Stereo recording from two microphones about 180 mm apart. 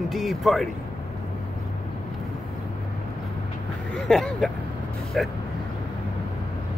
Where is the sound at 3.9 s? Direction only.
5° left (ahead or behind).